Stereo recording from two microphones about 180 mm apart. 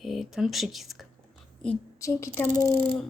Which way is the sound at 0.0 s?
Centre (ahead or behind).